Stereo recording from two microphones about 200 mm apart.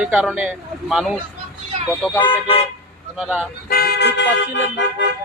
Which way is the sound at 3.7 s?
55° left (ahead or behind).